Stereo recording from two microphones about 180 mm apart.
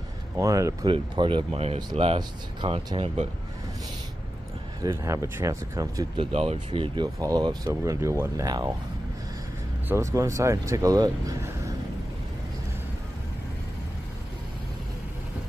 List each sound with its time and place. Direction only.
0.4 s speech: 15° right (ahead or behind)
4.8 s speech: 15° right (ahead or behind)
6.4 s speech: 30° right (ahead or behind)
9.8 s speech: 15° right (ahead or behind)